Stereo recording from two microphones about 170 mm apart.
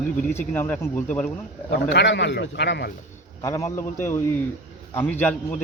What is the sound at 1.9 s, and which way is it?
Speech, 90° left.